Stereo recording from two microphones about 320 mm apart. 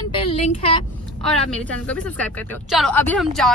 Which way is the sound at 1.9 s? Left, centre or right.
Centre.